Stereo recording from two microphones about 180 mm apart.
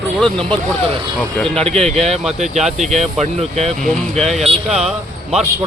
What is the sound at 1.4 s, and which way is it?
Speech, 5° left (ahead or behind).